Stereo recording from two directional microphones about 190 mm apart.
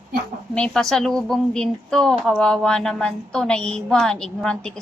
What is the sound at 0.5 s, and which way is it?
Speech, 5° left (ahead or behind).